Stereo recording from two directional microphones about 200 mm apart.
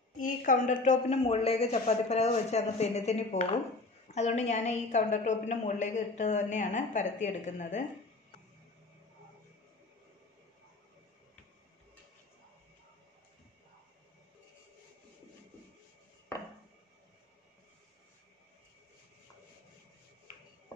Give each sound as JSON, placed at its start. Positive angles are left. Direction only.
{"t": 0.2, "sound": "a woman's voice", "side_deg": 40}